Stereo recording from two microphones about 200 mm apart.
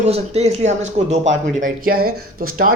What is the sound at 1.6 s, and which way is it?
Speech, 45° right (ahead or behind).